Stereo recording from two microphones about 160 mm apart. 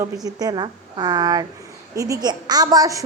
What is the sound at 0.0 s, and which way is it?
A woman's voice, 25° right (ahead or behind).